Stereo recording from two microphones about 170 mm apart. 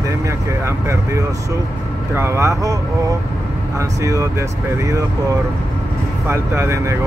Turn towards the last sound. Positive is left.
turn(degrees=-15)  # may be behind; listen again after turning